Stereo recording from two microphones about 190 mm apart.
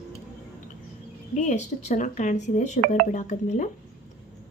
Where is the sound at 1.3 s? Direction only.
40° left (ahead or behind).